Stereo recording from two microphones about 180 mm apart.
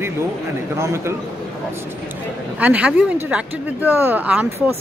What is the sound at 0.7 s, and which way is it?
Speech, 15° right (ahead or behind).